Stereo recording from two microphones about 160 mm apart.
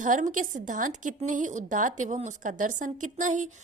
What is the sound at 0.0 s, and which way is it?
A woman's voice, 50° right (ahead or behind).